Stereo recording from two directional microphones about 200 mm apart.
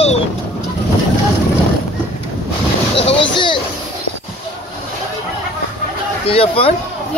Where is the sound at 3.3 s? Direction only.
25° left (ahead or behind).